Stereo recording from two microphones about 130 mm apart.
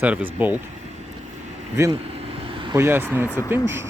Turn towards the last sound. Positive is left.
turn(degrees=-15)  # may be behind; listen again after turning